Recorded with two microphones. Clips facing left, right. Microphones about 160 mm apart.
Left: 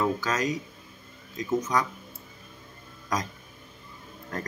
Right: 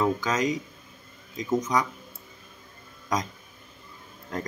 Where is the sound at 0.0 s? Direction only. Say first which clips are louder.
Right 2 dB; 15° right (ahead or behind).